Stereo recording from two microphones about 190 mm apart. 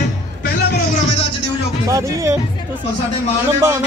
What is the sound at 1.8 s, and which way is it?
Speech, 15° right (ahead or behind).